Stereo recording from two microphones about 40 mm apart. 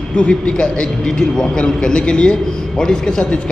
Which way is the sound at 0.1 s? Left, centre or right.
Left.